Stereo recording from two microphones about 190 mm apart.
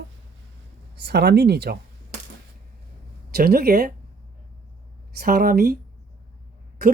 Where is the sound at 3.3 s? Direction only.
50° right (ahead or behind).